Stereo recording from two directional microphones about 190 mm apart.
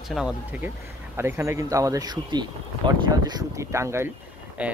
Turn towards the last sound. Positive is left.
turn(degrees=-5)  # may be behind; listen again after turning